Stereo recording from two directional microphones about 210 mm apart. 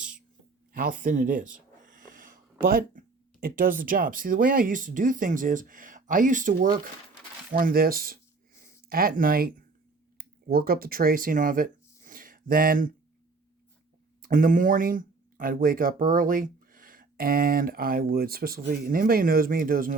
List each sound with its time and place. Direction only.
0.7 s speech: 40° right (ahead or behind)
1.9 s a sound: 40° right (ahead or behind)
3.4 s speech: 40° right (ahead or behind)
14.2 s speech: 40° right (ahead or behind)